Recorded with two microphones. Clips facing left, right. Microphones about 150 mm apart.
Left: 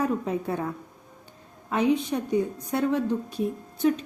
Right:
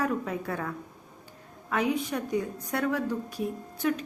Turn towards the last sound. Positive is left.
turn(degrees=25)  # may be behind; listen again after turning